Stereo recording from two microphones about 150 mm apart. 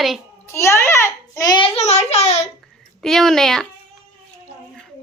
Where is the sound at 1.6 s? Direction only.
45° left (ahead or behind).